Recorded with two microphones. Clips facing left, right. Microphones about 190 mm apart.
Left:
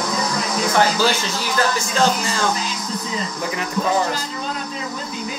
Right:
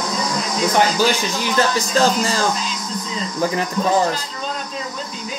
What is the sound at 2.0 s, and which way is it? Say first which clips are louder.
Music: right 2 dB; 35° right (ahead or behind).